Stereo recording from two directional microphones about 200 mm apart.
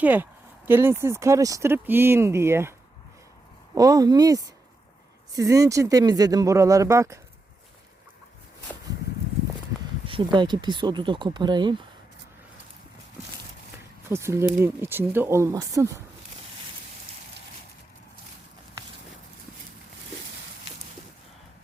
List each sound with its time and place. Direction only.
0.0 s speech: 10° right (ahead or behind)
3.8 s speech: 15° right (ahead or behind)
10.1 s speech: 25° right (ahead or behind)
14.1 s speech: 15° right (ahead or behind)